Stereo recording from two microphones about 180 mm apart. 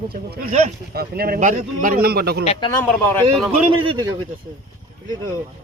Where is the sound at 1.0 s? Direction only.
60° right (ahead or behind).